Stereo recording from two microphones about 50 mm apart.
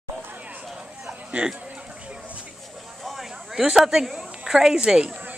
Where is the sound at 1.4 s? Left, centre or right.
Right.